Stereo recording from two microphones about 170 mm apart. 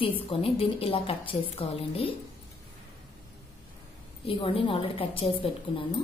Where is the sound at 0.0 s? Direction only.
30° left (ahead or behind).